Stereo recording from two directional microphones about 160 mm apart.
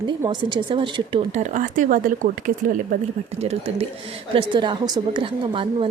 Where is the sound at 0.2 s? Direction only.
30° right (ahead or behind).